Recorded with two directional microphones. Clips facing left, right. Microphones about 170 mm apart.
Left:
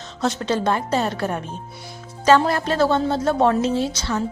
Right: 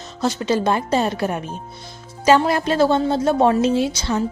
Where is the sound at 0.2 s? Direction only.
5° right (ahead or behind).